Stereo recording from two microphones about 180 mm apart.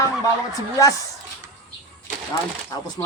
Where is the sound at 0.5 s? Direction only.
20° left (ahead or behind).